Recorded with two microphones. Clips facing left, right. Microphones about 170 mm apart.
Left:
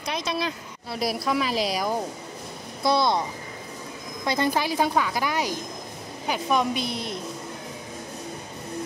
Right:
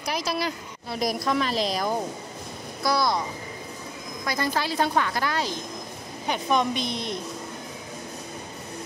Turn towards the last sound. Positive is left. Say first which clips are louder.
# even
turn(degrees=5)  # may be behind; listen again after turning